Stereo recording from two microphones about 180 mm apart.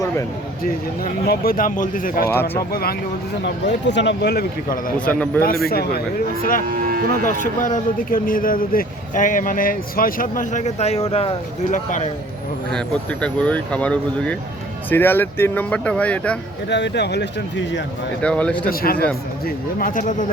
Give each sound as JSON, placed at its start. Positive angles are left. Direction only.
{"t": 0.6, "sound": "speech", "side_deg": 55}
{"t": 2.3, "sound": "speech", "side_deg": 15}
{"t": 3.4, "sound": "speech", "side_deg": 75}
{"t": 4.9, "sound": "speech", "side_deg": 5}
{"t": 5.4, "sound": "a man's voice", "side_deg": 55}
{"t": 6.7, "sound": "speech", "side_deg": -55}
{"t": 7.3, "sound": "speech", "side_deg": 45}
{"t": 12.7, "sound": "speech", "side_deg": 5}
{"t": 16.6, "sound": "speech", "side_deg": 75}
{"t": 18.2, "sound": "speech", "side_deg": 5}
{"t": 18.7, "sound": "a man's voice", "side_deg": 55}